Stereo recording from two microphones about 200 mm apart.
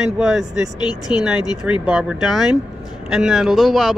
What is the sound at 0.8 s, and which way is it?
Speech, 20° left (ahead or behind).